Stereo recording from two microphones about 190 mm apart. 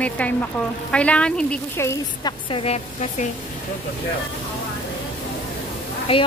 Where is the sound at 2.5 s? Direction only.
35° left (ahead or behind).